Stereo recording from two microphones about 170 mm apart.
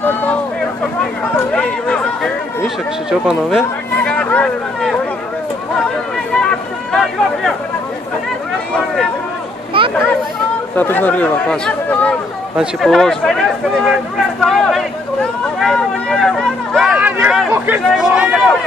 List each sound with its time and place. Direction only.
0.0 s speech: 10° left (ahead or behind)
1.5 s a man's voice: 5° left (ahead or behind)
6.9 s a man's voice: centre (ahead or behind)
9.8 s speech: 30° right (ahead or behind)
10.8 s speech: 10° left (ahead or behind)
15.6 s a sound: 5° left (ahead or behind)